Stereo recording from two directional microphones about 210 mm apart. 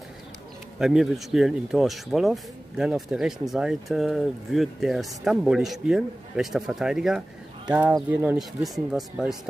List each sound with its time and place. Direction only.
0.7 s speech: centre (ahead or behind)